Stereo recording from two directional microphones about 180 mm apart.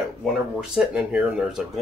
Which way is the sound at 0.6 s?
5° right (ahead or behind).